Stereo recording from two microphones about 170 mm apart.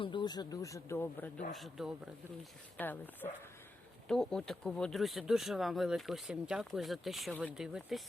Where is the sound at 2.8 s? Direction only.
10° left (ahead or behind).